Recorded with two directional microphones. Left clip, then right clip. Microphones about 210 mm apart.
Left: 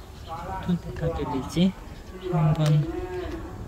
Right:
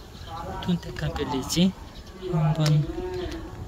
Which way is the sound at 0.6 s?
25° right (ahead or behind).